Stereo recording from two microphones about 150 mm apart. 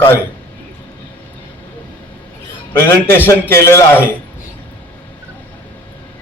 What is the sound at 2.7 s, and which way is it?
A man's voice, 15° left (ahead or behind).